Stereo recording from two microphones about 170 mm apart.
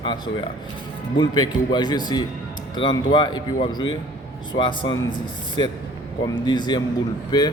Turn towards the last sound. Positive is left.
turn(degrees=25)  # may be behind; listen again after turning